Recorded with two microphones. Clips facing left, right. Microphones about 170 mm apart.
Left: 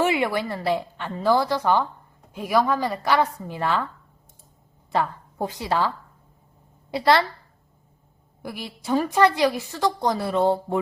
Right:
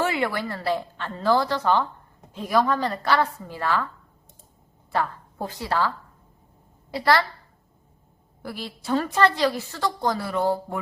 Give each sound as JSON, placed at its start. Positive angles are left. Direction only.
{"t": 0.0, "sound": "a woman's voice", "side_deg": 15}
{"t": 4.9, "sound": "a woman's voice", "side_deg": 15}
{"t": 6.9, "sound": "a woman's voice", "side_deg": 20}
{"t": 8.4, "sound": "a woman's voice", "side_deg": 15}